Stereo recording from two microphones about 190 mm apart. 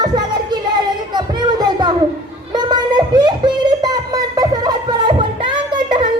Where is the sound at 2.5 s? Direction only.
20° right (ahead or behind).